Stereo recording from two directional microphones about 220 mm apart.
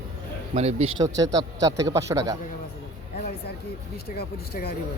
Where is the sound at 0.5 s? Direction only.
30° right (ahead or behind).